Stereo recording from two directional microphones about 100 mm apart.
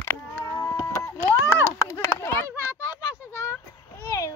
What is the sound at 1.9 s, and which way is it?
Chop, 35° left (ahead or behind).